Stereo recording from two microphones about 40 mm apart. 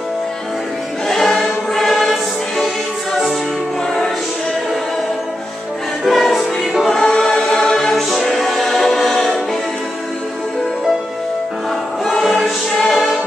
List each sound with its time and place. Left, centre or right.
1.0 s choir: centre
6.0 s music: centre
6.9 s choir: centre
7.9 s choir: centre
12.0 s choir: centre